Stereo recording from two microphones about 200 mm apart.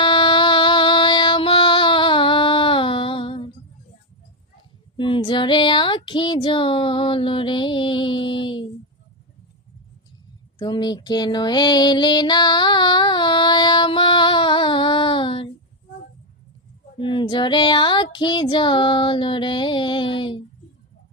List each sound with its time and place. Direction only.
0.0 s music: 25° left (ahead or behind)
4.9 s female singing: 25° left (ahead or behind)
10.6 s music: 20° left (ahead or behind)
17.0 s female singing: 25° left (ahead or behind)